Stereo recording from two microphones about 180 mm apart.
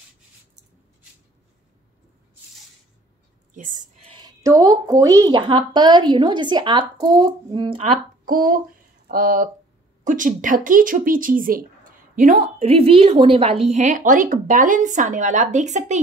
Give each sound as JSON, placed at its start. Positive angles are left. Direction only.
{"t": 3.5, "sound": "a woman's voice", "side_deg": -45}
{"t": 8.3, "sound": "speech", "side_deg": -50}